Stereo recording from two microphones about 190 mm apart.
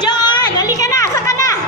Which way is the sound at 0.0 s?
20° left (ahead or behind).